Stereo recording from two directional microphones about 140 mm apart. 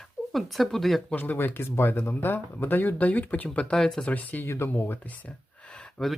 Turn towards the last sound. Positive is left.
turn(degrees=5)  # may be behind; listen again after turning